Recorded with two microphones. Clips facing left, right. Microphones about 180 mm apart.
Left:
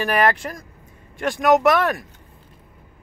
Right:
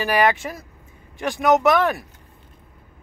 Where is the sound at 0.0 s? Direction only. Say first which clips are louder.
Even; centre (ahead or behind).